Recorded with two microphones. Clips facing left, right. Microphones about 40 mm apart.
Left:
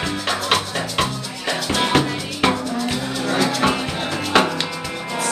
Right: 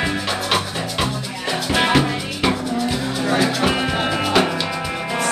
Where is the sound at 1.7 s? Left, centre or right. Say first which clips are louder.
Right 2 dB; centre.